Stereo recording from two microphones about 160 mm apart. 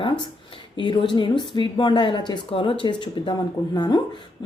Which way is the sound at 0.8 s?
30° left (ahead or behind).